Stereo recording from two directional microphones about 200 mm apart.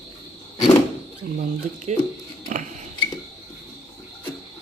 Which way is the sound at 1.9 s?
35° right (ahead or behind).